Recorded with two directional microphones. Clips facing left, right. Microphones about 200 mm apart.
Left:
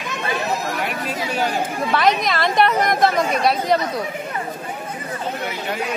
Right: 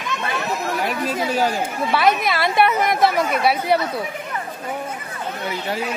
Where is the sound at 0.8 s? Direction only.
40° right (ahead or behind).